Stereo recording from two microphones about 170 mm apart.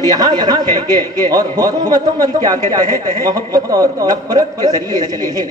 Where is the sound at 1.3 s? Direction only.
20° right (ahead or behind).